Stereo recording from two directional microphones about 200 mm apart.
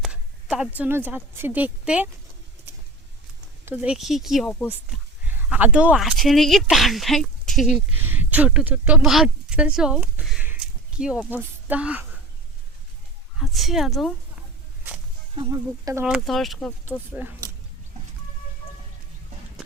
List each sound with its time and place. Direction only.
0.0 s a woman's voice: 5° right (ahead or behind)
3.7 s speech: 5° right (ahead or behind)
5.3 s speech: 10° right (ahead or behind)
13.4 s speech: centre (ahead or behind)
15.4 s speech: 15° right (ahead or behind)
16.0 s speech: centre (ahead or behind)
17.2 s speech: 10° right (ahead or behind)